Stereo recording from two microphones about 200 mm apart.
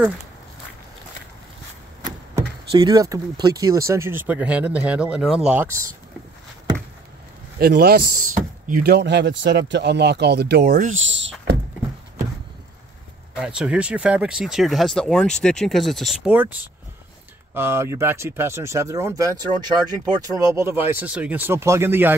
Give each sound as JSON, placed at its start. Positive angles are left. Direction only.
{"t": 2.7, "sound": "speech", "side_deg": -20}
{"t": 7.5, "sound": "speech", "side_deg": -50}
{"t": 11.0, "sound": "speech", "side_deg": -70}
{"t": 13.4, "sound": "speech", "side_deg": -5}
{"t": 17.6, "sound": "speech", "side_deg": -10}